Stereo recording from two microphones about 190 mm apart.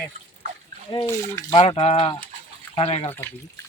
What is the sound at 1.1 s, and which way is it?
Speech, 20° left (ahead or behind).